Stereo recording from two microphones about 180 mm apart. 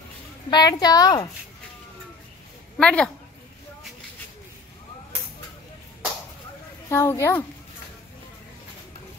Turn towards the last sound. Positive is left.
turn(degrees=15)  # may be behind; listen again after turning